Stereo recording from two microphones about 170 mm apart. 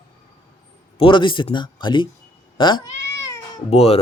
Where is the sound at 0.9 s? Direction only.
30° left (ahead or behind).